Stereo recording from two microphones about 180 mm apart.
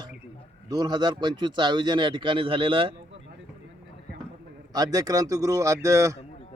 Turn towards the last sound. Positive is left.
turn(degrees=-15)  # may be behind; listen again after turning